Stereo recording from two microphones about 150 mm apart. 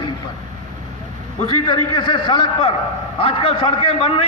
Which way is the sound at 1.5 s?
30° left (ahead or behind).